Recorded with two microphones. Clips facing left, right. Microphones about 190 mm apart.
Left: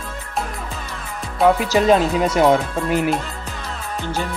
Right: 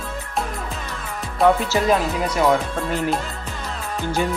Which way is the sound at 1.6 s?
20° left (ahead or behind).